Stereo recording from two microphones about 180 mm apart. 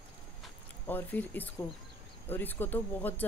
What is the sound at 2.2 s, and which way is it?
Speech, 10° left (ahead or behind).